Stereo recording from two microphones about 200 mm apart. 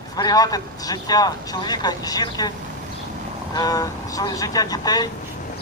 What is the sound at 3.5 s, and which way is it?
A man's voice, 20° left (ahead or behind).